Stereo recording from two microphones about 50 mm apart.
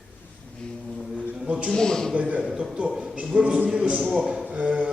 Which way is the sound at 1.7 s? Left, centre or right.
Centre.